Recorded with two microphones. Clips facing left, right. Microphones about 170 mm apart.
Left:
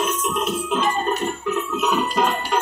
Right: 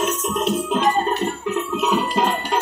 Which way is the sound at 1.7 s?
30° right (ahead or behind).